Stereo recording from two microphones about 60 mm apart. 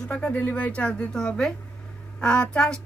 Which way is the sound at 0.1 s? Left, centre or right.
Left.